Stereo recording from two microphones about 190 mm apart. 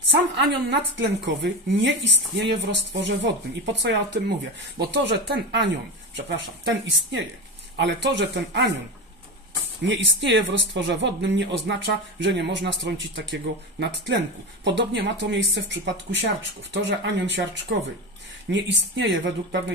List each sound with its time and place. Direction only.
0.7 s speech: 70° right (ahead or behind)
9.8 s speech: 75° right (ahead or behind)